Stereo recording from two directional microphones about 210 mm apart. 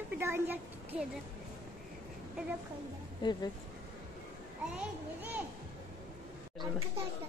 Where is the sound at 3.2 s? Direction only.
20° left (ahead or behind).